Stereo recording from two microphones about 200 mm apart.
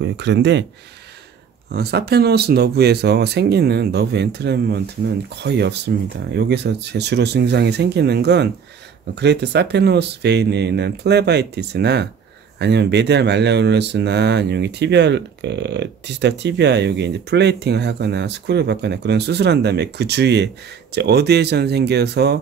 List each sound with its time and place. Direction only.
0.0 s speech: 60° right (ahead or behind)
1.7 s speech: 55° right (ahead or behind)